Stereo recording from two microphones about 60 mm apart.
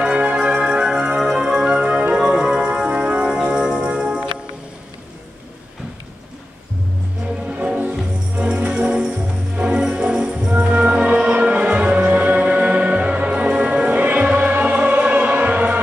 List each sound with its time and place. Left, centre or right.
0.1 s organ: centre
1.7 s music: centre
7.4 s music: centre